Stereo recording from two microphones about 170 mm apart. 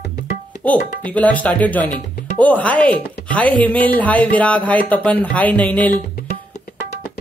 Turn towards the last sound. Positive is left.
turn(degrees=50)  # may be behind; listen again after turning